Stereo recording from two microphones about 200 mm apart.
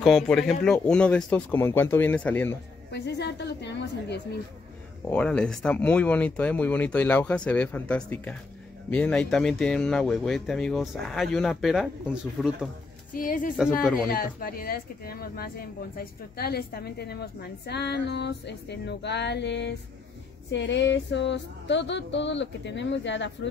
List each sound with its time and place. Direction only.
0.0 s speech: centre (ahead or behind)
2.9 s a woman's voice: 55° left (ahead or behind)
5.0 s speech: 5° left (ahead or behind)
13.1 s a woman's voice: 45° left (ahead or behind); by 23.5 s 65° left (ahead or behind)